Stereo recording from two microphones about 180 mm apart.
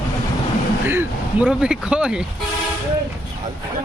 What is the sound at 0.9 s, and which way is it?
Speech, 10° right (ahead or behind).